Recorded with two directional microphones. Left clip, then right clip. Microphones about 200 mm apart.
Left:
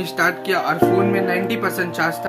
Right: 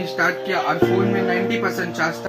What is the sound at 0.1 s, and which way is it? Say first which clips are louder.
Speech: left 2 dB; 15° left (ahead or behind).